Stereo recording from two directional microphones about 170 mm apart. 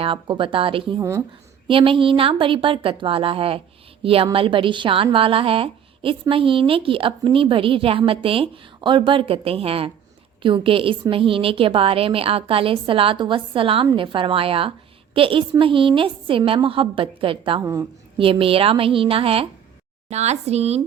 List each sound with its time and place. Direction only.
0.0 s a woman's voice: 30° right (ahead or behind)